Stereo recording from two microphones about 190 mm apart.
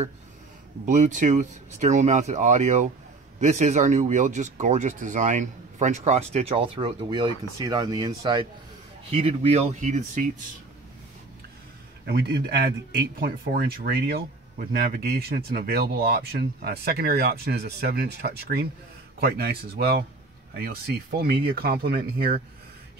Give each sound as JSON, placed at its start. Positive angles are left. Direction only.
{"t": 0.8, "sound": "speech", "side_deg": -40}
{"t": 9.1, "sound": "speech", "side_deg": -35}
{"t": 12.1, "sound": "a man's voice", "side_deg": -55}